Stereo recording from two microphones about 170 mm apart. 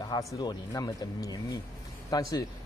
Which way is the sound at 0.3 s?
20° left (ahead or behind).